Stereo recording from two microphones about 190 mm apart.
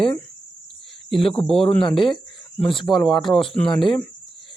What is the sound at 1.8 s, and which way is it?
Speech, 25° left (ahead or behind).